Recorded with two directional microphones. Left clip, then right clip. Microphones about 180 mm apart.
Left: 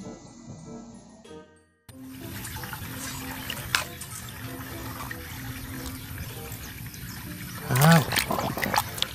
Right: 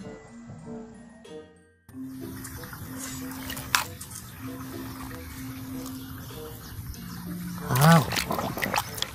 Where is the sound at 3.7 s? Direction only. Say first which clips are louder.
Right 1 dB; 40° right (ahead or behind).